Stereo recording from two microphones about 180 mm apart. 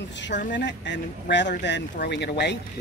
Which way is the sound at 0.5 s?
75° left (ahead or behind).